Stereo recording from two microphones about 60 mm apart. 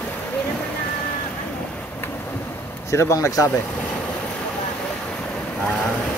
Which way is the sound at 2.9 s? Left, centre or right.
Left.